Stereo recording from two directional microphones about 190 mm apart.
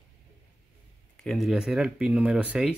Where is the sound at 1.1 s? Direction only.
Centre (ahead or behind).